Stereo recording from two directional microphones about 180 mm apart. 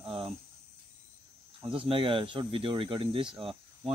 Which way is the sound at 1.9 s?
30° right (ahead or behind).